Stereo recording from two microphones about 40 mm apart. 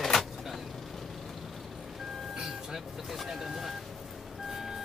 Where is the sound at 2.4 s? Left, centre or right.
Centre.